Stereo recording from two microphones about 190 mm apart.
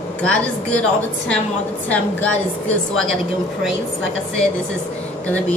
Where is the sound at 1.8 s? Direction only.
10° left (ahead or behind).